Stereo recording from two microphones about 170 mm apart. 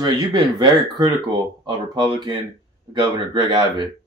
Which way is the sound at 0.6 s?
25° right (ahead or behind).